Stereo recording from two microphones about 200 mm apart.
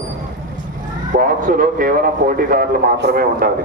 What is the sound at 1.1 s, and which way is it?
A man's voice, 40° right (ahead or behind).